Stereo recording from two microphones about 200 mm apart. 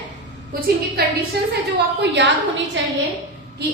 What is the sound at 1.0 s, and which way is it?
Speech, 50° right (ahead or behind).